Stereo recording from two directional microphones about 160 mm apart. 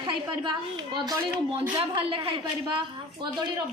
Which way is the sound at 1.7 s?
35° right (ahead or behind).